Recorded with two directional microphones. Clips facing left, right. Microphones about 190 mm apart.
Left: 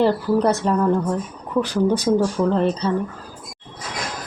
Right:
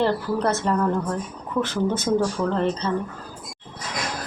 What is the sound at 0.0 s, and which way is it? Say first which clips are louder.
A woman's voice: left 4 dB; 10° left (ahead or behind).